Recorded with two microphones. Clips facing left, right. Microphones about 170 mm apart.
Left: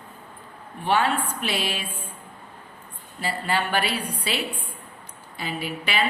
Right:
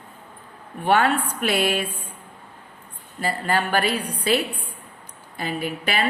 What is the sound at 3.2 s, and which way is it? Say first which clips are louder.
A woman's voice: right 3 dB; 45° right (ahead or behind).